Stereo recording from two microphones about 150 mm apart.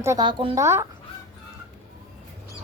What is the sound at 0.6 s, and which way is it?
Speech, 20° right (ahead or behind).